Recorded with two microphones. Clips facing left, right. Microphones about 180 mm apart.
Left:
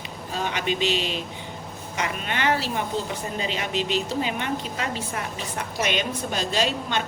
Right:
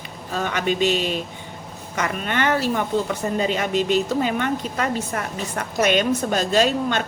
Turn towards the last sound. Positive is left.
turn(degrees=-45)  # may be behind; listen again after turning